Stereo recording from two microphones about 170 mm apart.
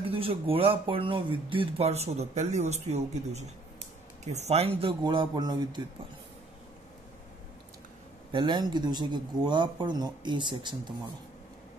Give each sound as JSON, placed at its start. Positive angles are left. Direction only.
{"t": 0.0, "sound": "speech", "side_deg": -35}
{"t": 8.3, "sound": "speech", "side_deg": -25}